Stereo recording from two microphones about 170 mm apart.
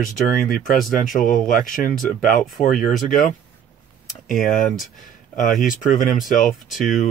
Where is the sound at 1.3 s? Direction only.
50° left (ahead or behind).